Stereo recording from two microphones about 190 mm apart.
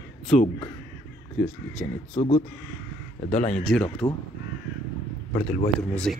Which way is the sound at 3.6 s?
5° left (ahead or behind).